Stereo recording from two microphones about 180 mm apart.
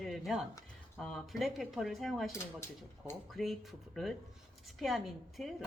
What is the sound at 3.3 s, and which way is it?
Speech, centre (ahead or behind).